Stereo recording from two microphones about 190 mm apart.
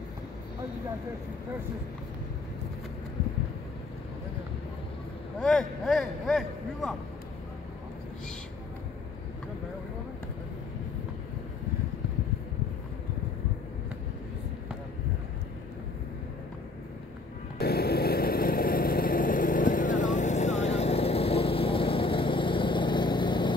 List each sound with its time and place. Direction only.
5.4 s a man's voice: centre (ahead or behind)
17.6 s vehicle: 55° left (ahead or behind); by 23.5 s 25° left (ahead or behind)